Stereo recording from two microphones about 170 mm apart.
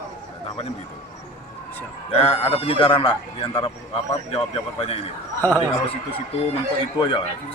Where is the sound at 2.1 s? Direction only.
35° left (ahead or behind).